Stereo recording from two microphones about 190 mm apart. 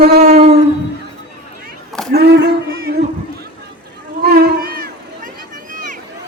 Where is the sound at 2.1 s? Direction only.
60° right (ahead or behind).